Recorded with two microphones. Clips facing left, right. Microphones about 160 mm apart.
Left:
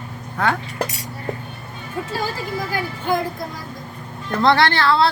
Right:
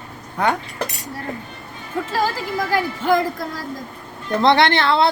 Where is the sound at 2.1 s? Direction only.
90° right.